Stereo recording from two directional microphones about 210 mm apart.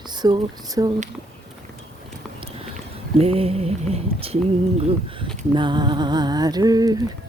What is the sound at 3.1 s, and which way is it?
Speech, 30° right (ahead or behind).